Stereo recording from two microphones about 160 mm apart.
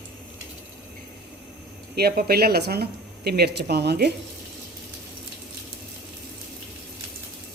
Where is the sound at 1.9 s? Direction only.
75° right (ahead or behind).